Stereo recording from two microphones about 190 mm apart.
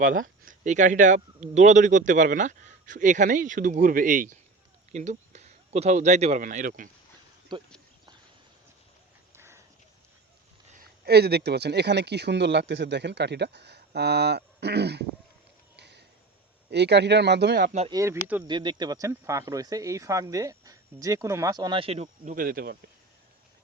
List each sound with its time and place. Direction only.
0.4 s speech: 40° right (ahead or behind)
7.5 s speech: 25° right (ahead or behind)
9.3 s a sound: 15° right (ahead or behind)
10.7 s speech: 50° right (ahead or behind)
15.7 s a sound: 65° right (ahead or behind)
16.6 s speech: 60° right (ahead or behind)
17.7 s speech: 35° right (ahead or behind)
17.9 s speech: 15° right (ahead or behind)
18.4 s speech: 25° right (ahead or behind); by 22.8 s 50° right (ahead or behind)